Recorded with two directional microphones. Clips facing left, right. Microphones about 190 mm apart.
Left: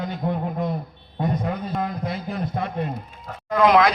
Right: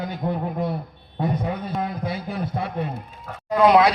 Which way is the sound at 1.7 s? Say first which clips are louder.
Even; 5° right (ahead or behind).